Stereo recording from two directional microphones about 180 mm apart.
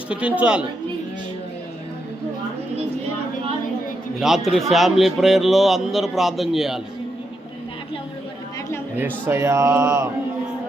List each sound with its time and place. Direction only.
0.1 s speech: 5° right (ahead or behind)
4.2 s a man's voice: centre (ahead or behind)
9.0 s speech: 10° right (ahead or behind)